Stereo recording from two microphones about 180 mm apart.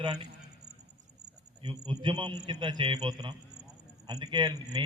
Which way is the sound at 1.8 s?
25° right (ahead or behind).